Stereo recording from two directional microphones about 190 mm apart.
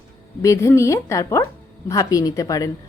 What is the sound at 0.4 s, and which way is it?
Speech, 15° left (ahead or behind).